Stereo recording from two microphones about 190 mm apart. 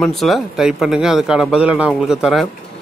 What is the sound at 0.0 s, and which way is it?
A man's voice, centre (ahead or behind).